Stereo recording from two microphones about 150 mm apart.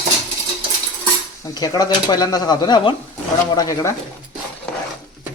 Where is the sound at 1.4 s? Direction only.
25° left (ahead or behind).